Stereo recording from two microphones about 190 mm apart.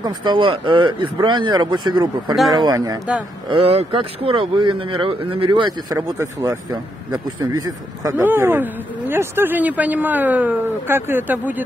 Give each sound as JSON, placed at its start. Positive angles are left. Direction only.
{"t": 0.0, "sound": "speech", "side_deg": -25}
{"t": 2.3, "sound": "speech", "side_deg": 0}
{"t": 2.6, "sound": "speech", "side_deg": -20}